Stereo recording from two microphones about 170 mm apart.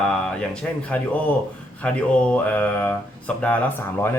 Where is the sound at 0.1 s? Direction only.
5° left (ahead or behind).